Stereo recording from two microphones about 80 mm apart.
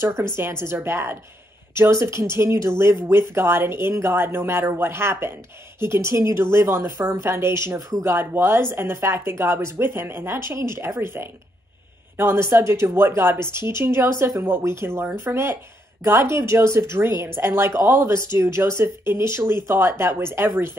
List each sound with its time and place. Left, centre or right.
0.3 s a woman's voice: right